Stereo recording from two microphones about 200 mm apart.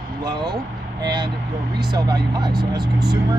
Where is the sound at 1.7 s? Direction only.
20° right (ahead or behind).